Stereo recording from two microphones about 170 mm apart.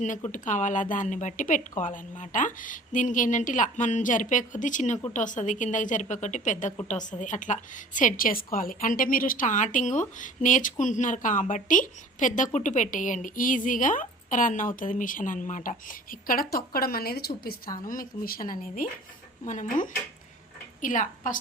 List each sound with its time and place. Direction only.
0.3 s a woman's voice: 50° left (ahead or behind)
20.8 s a woman's voice: 50° left (ahead or behind)